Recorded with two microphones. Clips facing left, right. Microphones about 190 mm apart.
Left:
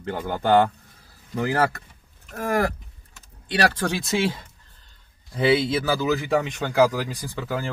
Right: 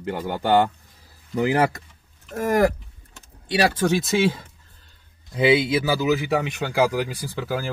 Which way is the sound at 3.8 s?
5° right (ahead or behind).